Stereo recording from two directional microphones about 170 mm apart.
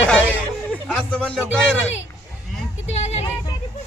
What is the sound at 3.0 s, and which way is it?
Vehicle, 40° left (ahead or behind).